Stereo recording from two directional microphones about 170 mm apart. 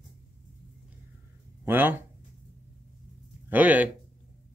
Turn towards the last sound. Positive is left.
turn(degrees=-10)  # may be behind; listen again after turning